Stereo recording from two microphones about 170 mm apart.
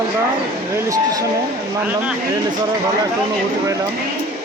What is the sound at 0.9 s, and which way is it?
Speech, 20° right (ahead or behind).